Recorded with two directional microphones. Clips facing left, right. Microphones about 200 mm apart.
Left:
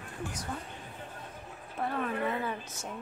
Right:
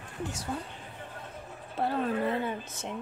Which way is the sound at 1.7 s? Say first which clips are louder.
Right 4 dB; 30° right (ahead or behind).